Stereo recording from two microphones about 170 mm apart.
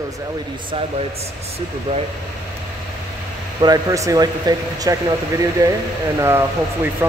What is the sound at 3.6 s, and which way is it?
A man's voice, 20° right (ahead or behind).